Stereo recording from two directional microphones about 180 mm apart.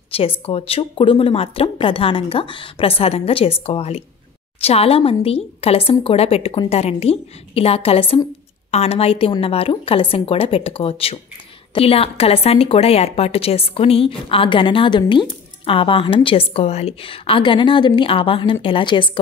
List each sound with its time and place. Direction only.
0.1 s a woman's voice: 30° left (ahead or behind)